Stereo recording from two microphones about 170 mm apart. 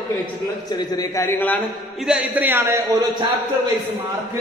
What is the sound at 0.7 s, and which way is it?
Speech, 20° left (ahead or behind).